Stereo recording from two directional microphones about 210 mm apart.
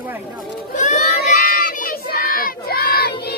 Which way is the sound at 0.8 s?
35° left (ahead or behind).